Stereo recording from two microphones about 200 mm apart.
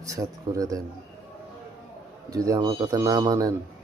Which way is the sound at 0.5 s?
15° right (ahead or behind).